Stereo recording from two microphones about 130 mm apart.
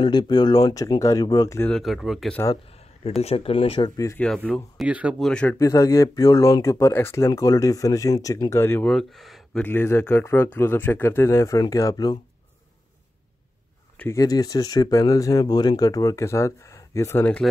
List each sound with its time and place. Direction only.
0.0 s speech: 35° left (ahead or behind)
1.7 s speech: centre (ahead or behind)
3.2 s speech: 50° left (ahead or behind)
3.9 s speech: 25° left (ahead or behind)
4.7 s speech: 10° right (ahead or behind)
5.2 s speech: 10° left (ahead or behind)
5.6 s speech: 25° left (ahead or behind)
8.8 s speech: centre (ahead or behind)
9.6 s speech: 15° left (ahead or behind)
13.9 s speech: 20° left (ahead or behind)